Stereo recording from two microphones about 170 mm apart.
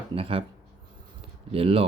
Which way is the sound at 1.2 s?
35° right (ahead or behind).